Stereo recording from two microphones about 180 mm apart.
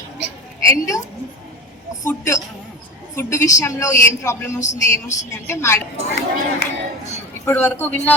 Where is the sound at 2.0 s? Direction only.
15° left (ahead or behind).